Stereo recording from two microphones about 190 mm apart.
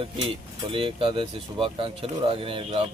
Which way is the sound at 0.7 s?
25° right (ahead or behind).